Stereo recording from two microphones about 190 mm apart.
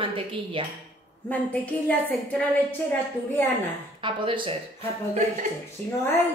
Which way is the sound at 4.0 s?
25° right (ahead or behind).